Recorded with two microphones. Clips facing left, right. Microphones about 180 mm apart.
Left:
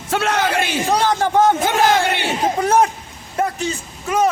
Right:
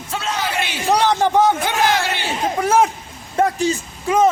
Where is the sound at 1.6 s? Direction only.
50° left (ahead or behind).